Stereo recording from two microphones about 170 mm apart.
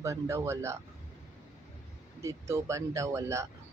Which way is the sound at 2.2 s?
15° right (ahead or behind).